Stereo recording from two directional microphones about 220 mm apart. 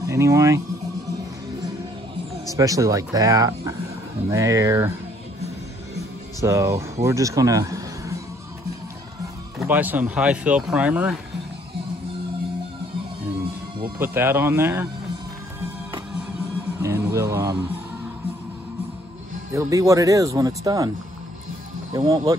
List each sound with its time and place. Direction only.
0.0 s speech: 15° right (ahead or behind)
2.5 s speech: 15° right (ahead or behind)
6.4 s speech: 15° right (ahead or behind)
9.6 s speech: 5° right (ahead or behind)
13.9 s speech: 10° right (ahead or behind)
16.8 s speech: 15° right (ahead or behind)
19.5 s speech: 15° right (ahead or behind)
21.9 s speech: 15° right (ahead or behind)